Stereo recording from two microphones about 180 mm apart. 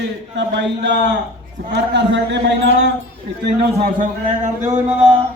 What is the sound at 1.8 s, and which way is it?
Speech, 75° right (ahead or behind).